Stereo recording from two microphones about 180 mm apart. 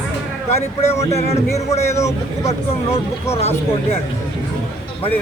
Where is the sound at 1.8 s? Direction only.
15° left (ahead or behind).